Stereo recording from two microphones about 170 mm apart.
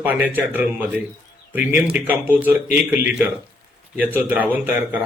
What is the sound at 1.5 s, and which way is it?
A man's voice, 10° right (ahead or behind).